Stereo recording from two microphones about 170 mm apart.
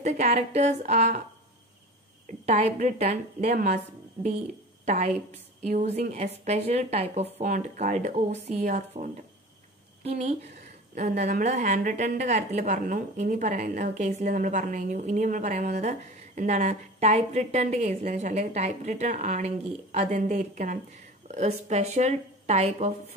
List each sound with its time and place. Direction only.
0.0 s speech: 40° right (ahead or behind)
2.4 s a woman's voice: 40° right (ahead or behind)